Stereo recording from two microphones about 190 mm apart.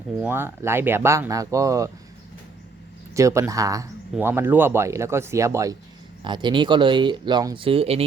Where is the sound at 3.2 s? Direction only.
15° right (ahead or behind).